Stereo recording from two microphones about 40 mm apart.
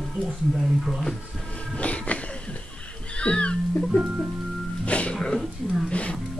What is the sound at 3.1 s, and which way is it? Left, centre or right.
Music, left.